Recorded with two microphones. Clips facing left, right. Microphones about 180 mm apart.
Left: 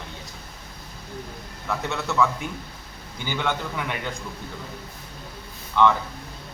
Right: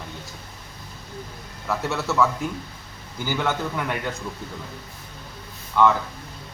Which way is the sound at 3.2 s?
5° right (ahead or behind).